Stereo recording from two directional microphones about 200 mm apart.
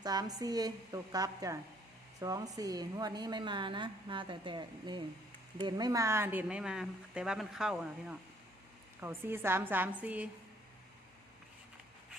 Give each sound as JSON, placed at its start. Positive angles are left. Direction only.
{"t": 0.0, "sound": "a woman's voice", "side_deg": -20}